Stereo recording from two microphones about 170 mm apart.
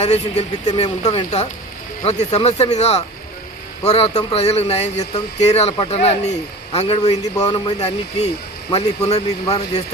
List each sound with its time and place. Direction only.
0.0 s speech: 40° left (ahead or behind)